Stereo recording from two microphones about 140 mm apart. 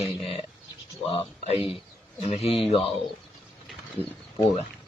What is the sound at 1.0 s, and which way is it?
Speech, 45° left (ahead or behind).